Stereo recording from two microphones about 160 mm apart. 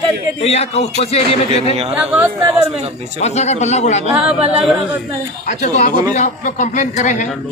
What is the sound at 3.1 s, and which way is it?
Speech, 45° left (ahead or behind).